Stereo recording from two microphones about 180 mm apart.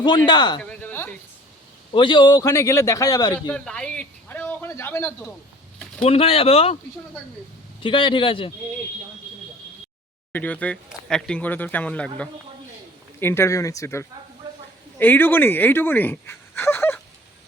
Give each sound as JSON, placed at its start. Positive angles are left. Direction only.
{"t": 0.3, "sound": "a man's voice", "side_deg": 25}
{"t": 0.6, "sound": "a sound", "side_deg": 10}
{"t": 1.9, "sound": "a man's voice", "side_deg": 30}
{"t": 3.5, "sound": "a sound", "side_deg": 5}
{"t": 6.0, "sound": "speech", "side_deg": 30}
{"t": 7.8, "sound": "a man's voice", "side_deg": 25}
{"t": 10.3, "sound": "speech", "side_deg": 10}